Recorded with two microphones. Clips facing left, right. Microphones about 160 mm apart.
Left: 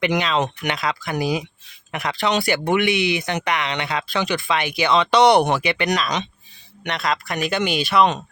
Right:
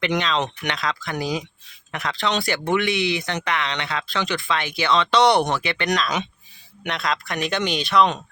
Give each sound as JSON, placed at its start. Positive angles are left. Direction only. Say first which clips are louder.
{"t": 0.0, "sound": "speech", "louder": "left 2 dB", "side_deg": 10}
{"t": 6.8, "sound": "speech", "louder": "left 2 dB", "side_deg": 0}